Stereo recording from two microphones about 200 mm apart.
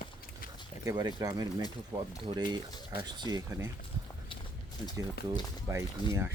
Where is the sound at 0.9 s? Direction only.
20° right (ahead or behind).